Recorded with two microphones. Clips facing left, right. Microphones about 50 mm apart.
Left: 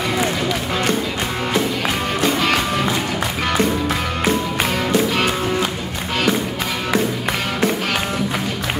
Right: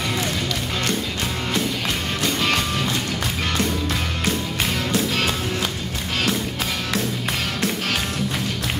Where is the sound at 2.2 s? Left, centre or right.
Centre.